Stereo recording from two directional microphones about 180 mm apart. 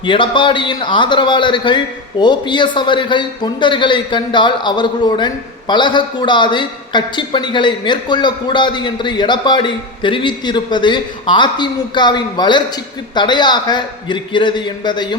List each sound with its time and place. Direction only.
0.0 s a man's voice: 30° left (ahead or behind)